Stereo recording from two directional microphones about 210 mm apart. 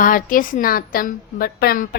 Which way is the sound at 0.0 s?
40° left (ahead or behind).